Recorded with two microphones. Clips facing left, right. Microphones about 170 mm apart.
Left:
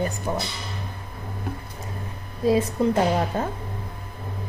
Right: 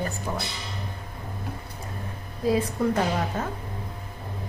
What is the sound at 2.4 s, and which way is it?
A woman's voice, 25° left (ahead or behind).